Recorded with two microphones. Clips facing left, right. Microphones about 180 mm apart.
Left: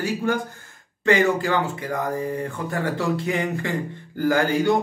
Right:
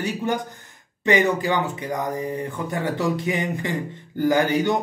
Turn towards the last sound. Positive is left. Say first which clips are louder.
# even
turn(degrees=-20)  # may be behind; listen again after turning